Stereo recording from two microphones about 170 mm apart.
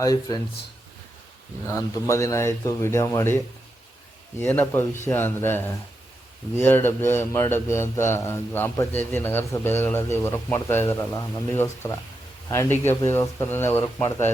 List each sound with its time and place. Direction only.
0.0 s speech: 20° left (ahead or behind)
1.6 s speech: 15° left (ahead or behind)
4.4 s speech: 10° left (ahead or behind)